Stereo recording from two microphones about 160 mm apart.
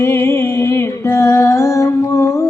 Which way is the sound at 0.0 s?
15° left (ahead or behind).